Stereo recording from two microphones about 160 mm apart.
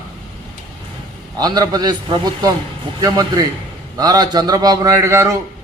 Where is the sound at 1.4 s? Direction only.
25° right (ahead or behind).